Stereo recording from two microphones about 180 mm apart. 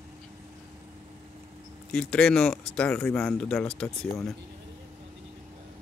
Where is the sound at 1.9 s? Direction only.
5° left (ahead or behind).